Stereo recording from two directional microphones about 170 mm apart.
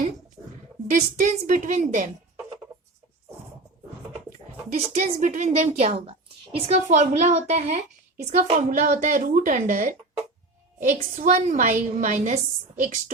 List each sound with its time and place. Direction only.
0.9 s a woman's voice: 50° right (ahead or behind)
4.1 s a woman's voice: 45° right (ahead or behind)